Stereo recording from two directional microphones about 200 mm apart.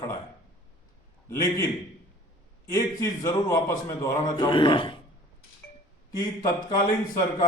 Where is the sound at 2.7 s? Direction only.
15° left (ahead or behind).